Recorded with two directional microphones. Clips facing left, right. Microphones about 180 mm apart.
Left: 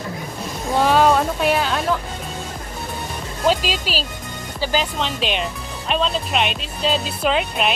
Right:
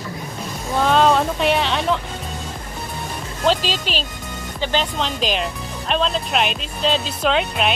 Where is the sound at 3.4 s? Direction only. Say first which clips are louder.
Even; 10° left (ahead or behind).